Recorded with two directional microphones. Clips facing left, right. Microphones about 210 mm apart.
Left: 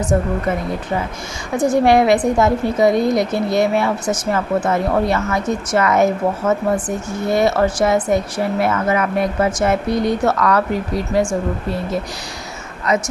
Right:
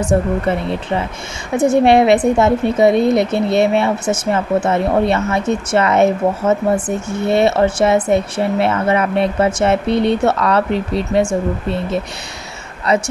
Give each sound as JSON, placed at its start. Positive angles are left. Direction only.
{"t": 0.1, "sound": "a man's voice", "side_deg": -30}